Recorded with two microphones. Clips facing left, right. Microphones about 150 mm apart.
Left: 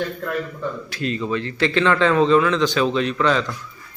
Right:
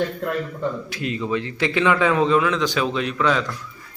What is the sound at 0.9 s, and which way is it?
A man's voice, 15° right (ahead or behind).